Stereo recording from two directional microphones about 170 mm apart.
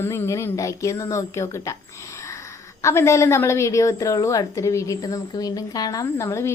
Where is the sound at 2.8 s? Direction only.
15° left (ahead or behind).